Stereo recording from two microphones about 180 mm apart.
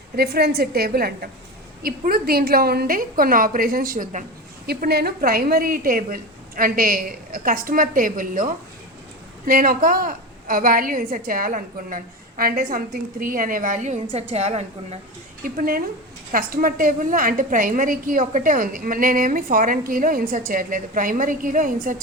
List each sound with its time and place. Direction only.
0.2 s a woman's voice: 60° right (ahead or behind)
4.6 s a woman's voice: 60° right (ahead or behind); by 14.9 s 35° right (ahead or behind)
15.4 s a woman's voice: 55° right (ahead or behind)